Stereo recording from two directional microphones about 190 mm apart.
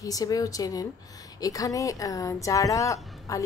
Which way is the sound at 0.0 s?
20° left (ahead or behind).